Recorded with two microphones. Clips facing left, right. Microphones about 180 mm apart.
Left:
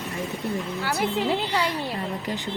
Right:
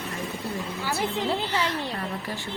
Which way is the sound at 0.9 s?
15° left (ahead or behind).